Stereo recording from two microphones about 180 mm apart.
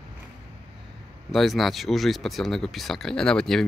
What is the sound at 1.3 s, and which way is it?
A man's voice, centre (ahead or behind).